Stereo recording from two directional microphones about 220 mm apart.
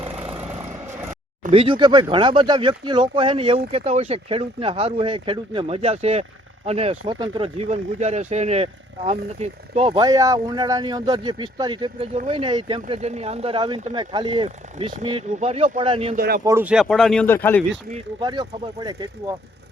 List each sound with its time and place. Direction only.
0.9 s a sound: 10° right (ahead or behind)
1.5 s speech: 25° right (ahead or behind)
16.1 s speech: 45° right (ahead or behind)
16.4 s speech: 10° right (ahead or behind); by 17.6 s 10° left (ahead or behind)
18.2 s speech: 20° right (ahead or behind)